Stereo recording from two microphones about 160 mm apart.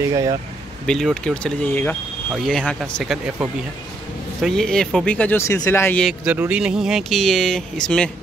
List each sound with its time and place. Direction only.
0.1 s speech: 20° right (ahead or behind)
0.8 s speech: centre (ahead or behind)
6.0 s speech: 10° right (ahead or behind); by 8.1 s 5° left (ahead or behind)